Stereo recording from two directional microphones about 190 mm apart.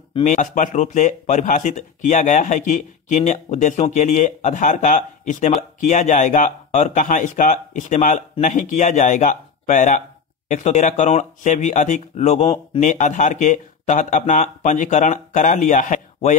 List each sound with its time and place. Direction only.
0.1 s a man's voice: 40° left (ahead or behind)